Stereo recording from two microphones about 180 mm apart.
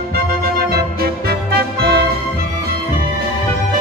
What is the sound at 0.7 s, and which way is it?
Music, 60° right (ahead or behind).